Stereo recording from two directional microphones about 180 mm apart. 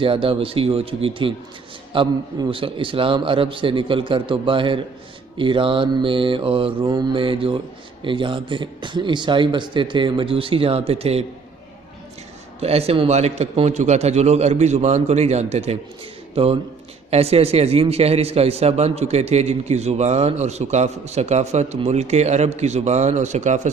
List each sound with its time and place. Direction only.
0.0 s a man's voice: 30° right (ahead or behind)
12.5 s a man's voice: 35° right (ahead or behind)